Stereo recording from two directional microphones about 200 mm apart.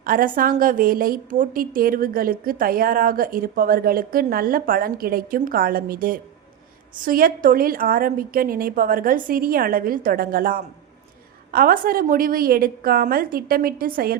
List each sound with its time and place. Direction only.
0.0 s a woman's voice: 45° right (ahead or behind)